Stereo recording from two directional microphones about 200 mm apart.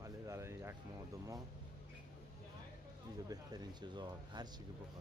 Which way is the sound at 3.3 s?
20° right (ahead or behind).